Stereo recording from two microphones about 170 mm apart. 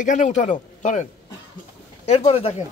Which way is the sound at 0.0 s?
45° left (ahead or behind).